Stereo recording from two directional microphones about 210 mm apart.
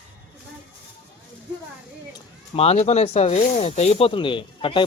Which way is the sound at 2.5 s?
30° left (ahead or behind).